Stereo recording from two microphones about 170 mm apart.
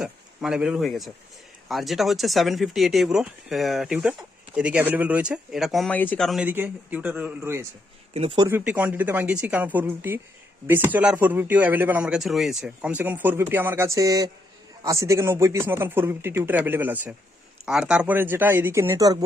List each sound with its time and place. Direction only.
0.0 s speech: 5° right (ahead or behind)
8.1 s speech: 35° right (ahead or behind)
8.4 s speech: 15° right (ahead or behind)